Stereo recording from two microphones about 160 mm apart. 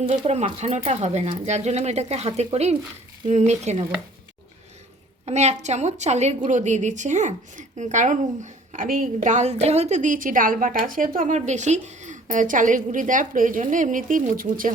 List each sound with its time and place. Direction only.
0.3 s a woman's voice: 45° right (ahead or behind)
5.2 s a woman's voice: 45° right (ahead or behind)